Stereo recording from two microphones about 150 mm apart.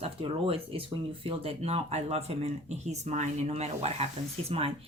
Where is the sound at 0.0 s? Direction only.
40° right (ahead or behind).